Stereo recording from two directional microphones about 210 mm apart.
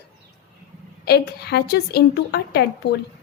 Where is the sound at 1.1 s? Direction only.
50° left (ahead or behind).